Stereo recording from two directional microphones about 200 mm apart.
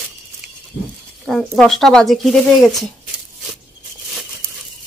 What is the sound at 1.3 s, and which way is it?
A woman's voice, 5° left (ahead or behind).